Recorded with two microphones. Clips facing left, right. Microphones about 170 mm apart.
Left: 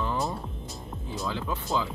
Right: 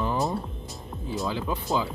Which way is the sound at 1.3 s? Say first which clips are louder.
Right 2 dB; 15° right (ahead or behind).